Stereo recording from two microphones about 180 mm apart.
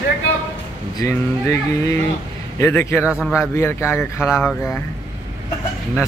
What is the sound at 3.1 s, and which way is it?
Speech, centre (ahead or behind).